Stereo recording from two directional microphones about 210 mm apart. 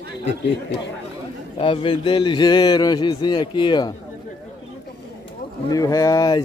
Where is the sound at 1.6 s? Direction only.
25° left (ahead or behind).